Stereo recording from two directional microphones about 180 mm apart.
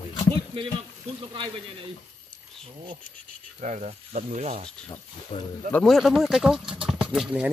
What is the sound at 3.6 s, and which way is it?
Speech, 40° right (ahead or behind).